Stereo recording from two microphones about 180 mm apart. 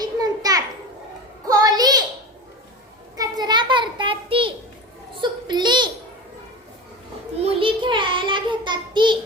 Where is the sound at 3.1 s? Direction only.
20° right (ahead or behind).